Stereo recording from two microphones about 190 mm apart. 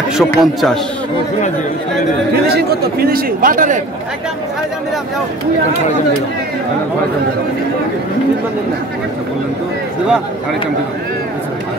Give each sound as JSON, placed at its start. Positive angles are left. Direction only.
{"t": 0.2, "sound": "a man's voice", "side_deg": 0}
{"t": 2.5, "sound": "a man's voice", "side_deg": -55}